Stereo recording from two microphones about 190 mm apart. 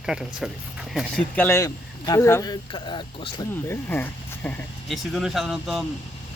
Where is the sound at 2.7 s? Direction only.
25° left (ahead or behind).